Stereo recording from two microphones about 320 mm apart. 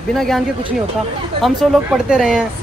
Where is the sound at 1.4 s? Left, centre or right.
Centre.